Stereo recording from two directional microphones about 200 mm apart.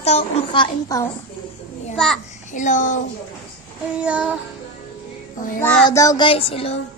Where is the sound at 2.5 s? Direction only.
40° left (ahead or behind).